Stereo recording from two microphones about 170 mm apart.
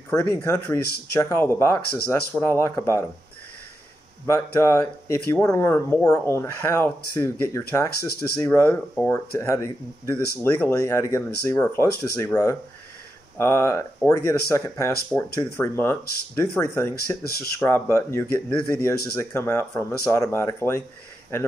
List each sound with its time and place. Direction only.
0.1 s speech: 15° left (ahead or behind)
4.3 s speech: 15° left (ahead or behind)